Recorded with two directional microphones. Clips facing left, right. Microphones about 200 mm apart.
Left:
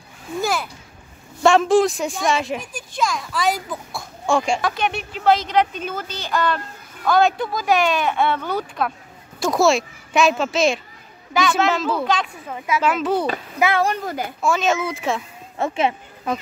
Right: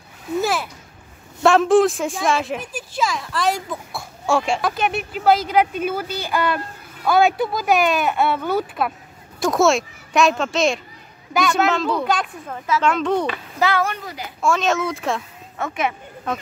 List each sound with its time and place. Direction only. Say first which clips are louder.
0.3 s a sound: right 2 dB; centre (ahead or behind)
1.4 s speech: right 1 dB; centre (ahead or behind)
13.6 s a child's voice: left 1 dB; 20° left (ahead or behind)
13.8 s a child's voice: left 5 dB; 45° left (ahead or behind)
14.4 s speech: right 1 dB; centre (ahead or behind)
15.5 s a child's voice: left 3 dB; 25° left (ahead or behind)